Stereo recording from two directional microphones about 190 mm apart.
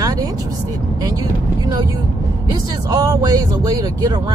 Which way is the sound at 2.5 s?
20° right (ahead or behind).